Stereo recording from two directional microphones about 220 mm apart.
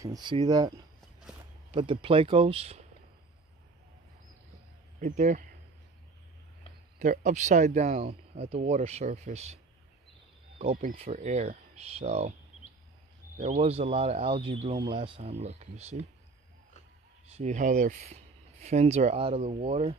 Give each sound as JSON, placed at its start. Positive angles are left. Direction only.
{"t": 0.0, "sound": "speech", "side_deg": -20}
{"t": 1.8, "sound": "speech", "side_deg": -25}
{"t": 5.0, "sound": "speech", "side_deg": -35}
{"t": 7.0, "sound": "speech", "side_deg": -35}
{"t": 10.6, "sound": "speech", "side_deg": -30}
{"t": 13.4, "sound": "speech", "side_deg": -30}
{"t": 17.4, "sound": "speech", "side_deg": -35}